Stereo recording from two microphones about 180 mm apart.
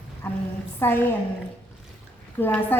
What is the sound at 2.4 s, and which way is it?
Speech, 10° left (ahead or behind).